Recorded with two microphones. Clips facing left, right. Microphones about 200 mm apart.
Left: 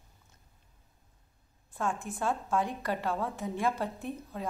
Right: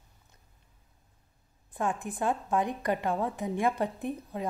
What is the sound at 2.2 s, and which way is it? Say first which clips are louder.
A woman's voice: right 2 dB; 15° right (ahead or behind).